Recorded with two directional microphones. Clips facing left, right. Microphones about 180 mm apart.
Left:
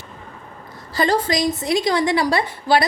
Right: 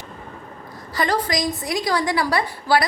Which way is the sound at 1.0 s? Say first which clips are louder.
Left 3 dB; 25° left (ahead or behind).